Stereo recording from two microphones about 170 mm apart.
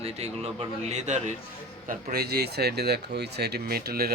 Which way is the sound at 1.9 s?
60° right (ahead or behind).